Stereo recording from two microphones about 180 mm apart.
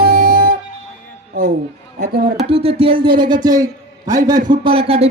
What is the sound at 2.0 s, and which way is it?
Speech, 55° right (ahead or behind).